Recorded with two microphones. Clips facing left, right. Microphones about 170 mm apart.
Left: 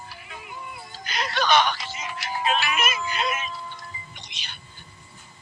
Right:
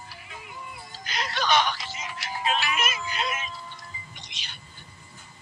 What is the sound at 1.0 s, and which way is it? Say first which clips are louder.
Speech: left 3 dB; 65° left (ahead or behind).